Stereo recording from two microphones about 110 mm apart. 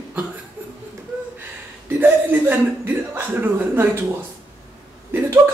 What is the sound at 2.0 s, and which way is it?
Speech, 15° right (ahead or behind).